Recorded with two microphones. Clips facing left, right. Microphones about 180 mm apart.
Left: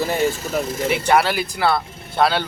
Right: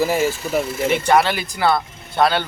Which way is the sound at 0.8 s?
5° left (ahead or behind).